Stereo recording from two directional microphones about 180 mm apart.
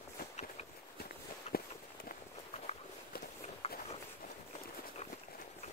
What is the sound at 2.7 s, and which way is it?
Walk, 35° left (ahead or behind).